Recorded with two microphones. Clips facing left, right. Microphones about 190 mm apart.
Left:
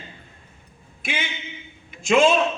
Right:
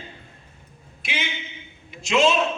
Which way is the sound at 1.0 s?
50° left (ahead or behind).